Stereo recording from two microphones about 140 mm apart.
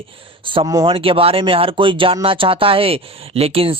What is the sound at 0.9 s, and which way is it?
Speech, 40° right (ahead or behind).